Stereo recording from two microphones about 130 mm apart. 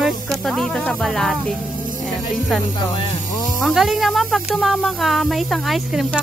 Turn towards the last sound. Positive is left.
turn(degrees=0)  # may be behind; listen again after turning